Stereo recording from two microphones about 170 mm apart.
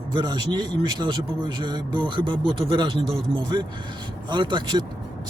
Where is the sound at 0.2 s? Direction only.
25° right (ahead or behind).